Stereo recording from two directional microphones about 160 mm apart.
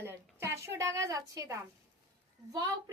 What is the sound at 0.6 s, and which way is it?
A woman's voice, 15° right (ahead or behind).